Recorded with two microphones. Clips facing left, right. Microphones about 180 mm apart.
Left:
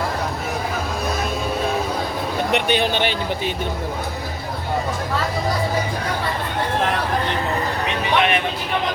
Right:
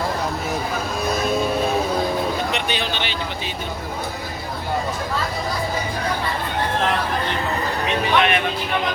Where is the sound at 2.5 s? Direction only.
55° left (ahead or behind).